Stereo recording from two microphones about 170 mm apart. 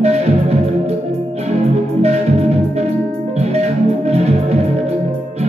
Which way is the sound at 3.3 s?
40° right (ahead or behind).